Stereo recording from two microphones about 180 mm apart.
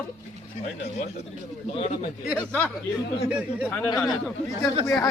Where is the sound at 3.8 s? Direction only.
20° left (ahead or behind).